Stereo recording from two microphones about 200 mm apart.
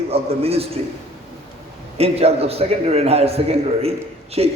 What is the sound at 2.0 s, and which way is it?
A man's voice, 30° right (ahead or behind).